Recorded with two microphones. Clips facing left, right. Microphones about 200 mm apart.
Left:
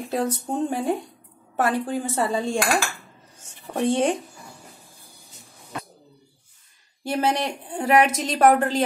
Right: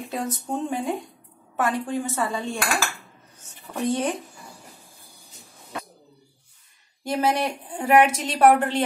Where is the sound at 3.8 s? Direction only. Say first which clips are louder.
Left 3 dB; 30° left (ahead or behind).